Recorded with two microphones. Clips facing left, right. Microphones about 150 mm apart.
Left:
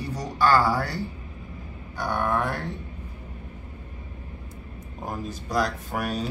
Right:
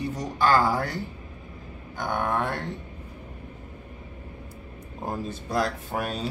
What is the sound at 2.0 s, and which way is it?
Speech, 20° right (ahead or behind).